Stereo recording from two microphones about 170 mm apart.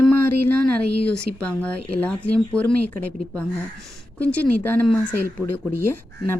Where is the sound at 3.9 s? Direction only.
10° left (ahead or behind).